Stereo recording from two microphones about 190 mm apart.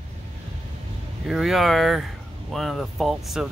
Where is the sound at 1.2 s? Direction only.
Centre (ahead or behind).